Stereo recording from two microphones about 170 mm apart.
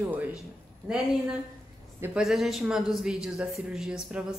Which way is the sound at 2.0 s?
5° right (ahead or behind).